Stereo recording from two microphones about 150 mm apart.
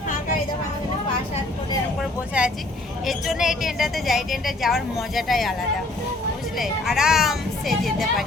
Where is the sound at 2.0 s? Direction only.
5° right (ahead or behind).